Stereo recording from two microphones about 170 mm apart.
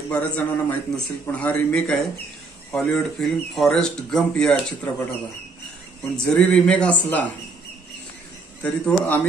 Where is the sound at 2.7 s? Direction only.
5° left (ahead or behind).